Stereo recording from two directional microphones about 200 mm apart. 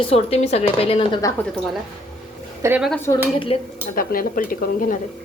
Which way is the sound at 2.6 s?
10° right (ahead or behind).